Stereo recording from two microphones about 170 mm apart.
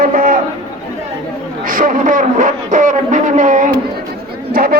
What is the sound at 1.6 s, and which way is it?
A man's voice, 50° right (ahead or behind).